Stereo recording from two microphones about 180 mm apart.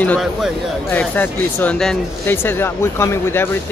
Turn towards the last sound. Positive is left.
turn(degrees=10)  # may be behind; listen again after turning